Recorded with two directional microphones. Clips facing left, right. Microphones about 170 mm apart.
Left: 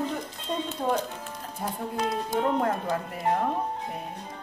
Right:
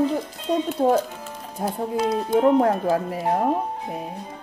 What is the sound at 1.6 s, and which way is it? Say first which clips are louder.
Speech: right 6 dB; 35° right (ahead or behind).